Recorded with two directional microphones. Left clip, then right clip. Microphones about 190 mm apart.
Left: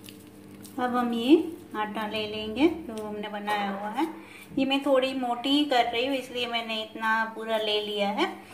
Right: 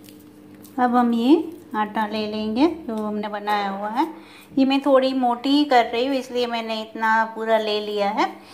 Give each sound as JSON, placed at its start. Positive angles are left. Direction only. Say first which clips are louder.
{"t": 0.7, "sound": "a woman's voice", "louder": "right 8 dB", "side_deg": -35}